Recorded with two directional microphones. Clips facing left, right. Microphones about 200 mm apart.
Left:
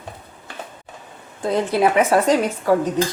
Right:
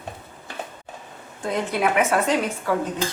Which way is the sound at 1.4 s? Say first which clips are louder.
Left 5 dB; 35° left (ahead or behind).